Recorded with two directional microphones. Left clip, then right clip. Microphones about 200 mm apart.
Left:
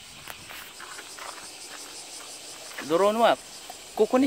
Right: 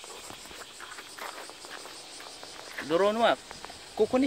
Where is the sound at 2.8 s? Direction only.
20° left (ahead or behind).